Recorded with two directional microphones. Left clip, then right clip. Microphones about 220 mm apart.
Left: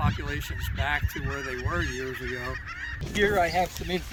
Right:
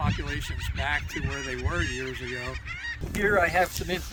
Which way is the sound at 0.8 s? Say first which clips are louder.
Even; 5° right (ahead or behind).